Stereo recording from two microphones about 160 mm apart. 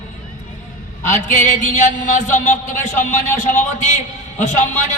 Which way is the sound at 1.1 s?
50° left (ahead or behind).